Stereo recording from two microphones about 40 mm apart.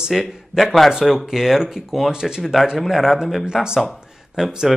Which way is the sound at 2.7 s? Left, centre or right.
Centre.